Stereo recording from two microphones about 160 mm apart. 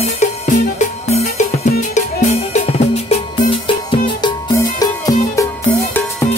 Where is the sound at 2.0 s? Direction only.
45° left (ahead or behind).